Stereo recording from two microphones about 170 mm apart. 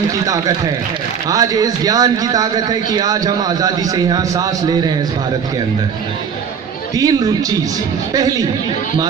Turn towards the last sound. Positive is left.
turn(degrees=-20)  # may be behind; listen again after turning